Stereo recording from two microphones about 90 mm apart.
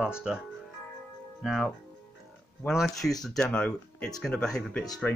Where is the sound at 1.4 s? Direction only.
Centre (ahead or behind).